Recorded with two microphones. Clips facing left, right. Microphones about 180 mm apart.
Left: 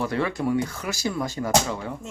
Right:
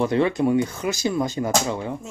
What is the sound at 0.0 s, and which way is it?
Speech, 20° right (ahead or behind).